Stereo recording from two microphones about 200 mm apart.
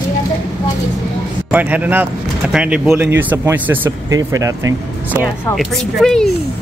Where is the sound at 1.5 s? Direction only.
10° right (ahead or behind).